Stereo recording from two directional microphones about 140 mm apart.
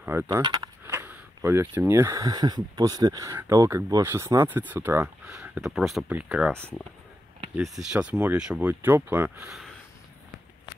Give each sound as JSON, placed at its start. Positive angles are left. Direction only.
{"t": 0.0, "sound": "speech", "side_deg": -15}
{"t": 0.4, "sound": "speech", "side_deg": -25}
{"t": 5.2, "sound": "speech", "side_deg": -5}
{"t": 7.5, "sound": "speech", "side_deg": 0}